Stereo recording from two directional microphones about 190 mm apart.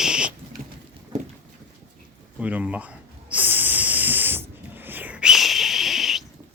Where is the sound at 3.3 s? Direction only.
10° right (ahead or behind).